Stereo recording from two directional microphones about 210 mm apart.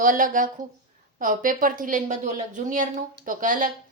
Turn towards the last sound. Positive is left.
turn(degrees=-40)  # may be behind; listen again after turning